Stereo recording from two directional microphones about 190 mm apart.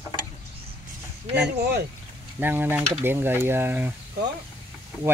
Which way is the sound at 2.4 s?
10° right (ahead or behind).